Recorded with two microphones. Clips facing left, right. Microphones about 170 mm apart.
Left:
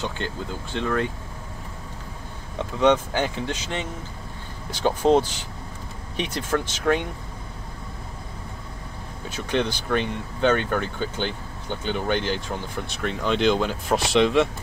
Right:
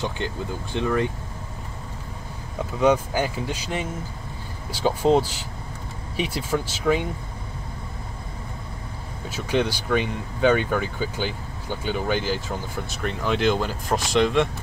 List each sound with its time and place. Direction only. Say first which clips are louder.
0.7 s speech: right 2 dB; 10° right (ahead or behind)
2.6 s speech: even; 5° right (ahead or behind)
9.3 s speech: right 1 dB; 5° right (ahead or behind)